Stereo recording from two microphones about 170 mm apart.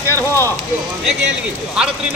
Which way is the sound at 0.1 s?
15° left (ahead or behind).